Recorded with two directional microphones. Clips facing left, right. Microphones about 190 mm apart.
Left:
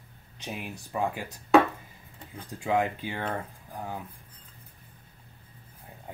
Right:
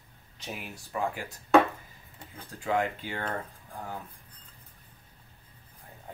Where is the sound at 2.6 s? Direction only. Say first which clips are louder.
Left 2 dB; 15° left (ahead or behind).